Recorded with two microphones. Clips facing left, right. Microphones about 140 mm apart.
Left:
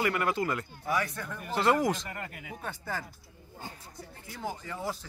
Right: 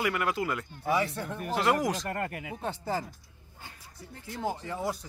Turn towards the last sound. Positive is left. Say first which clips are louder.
# right 3 dB
turn(degrees=-20)  # may be behind; listen again after turning